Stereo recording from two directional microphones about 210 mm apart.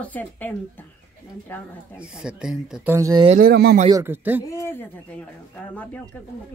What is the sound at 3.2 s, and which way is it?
Speech, 35° right (ahead or behind).